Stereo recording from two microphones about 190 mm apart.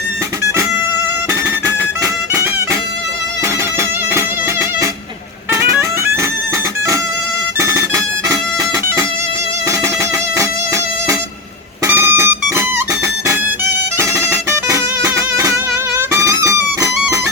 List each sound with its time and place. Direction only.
5.5 s music: 15° right (ahead or behind)
7.6 s music: 15° right (ahead or behind)
11.9 s music: 15° right (ahead or behind)
14.0 s music: 15° right (ahead or behind)